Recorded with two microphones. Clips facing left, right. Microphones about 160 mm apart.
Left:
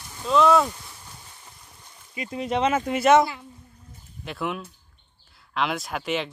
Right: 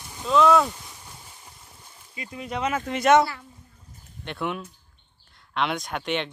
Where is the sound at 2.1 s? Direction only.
20° left (ahead or behind).